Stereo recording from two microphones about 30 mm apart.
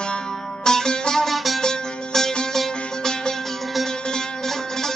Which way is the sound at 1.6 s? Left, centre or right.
Centre.